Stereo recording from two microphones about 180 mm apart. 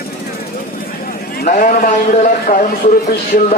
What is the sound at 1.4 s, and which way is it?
A man's voice, 45° left (ahead or behind).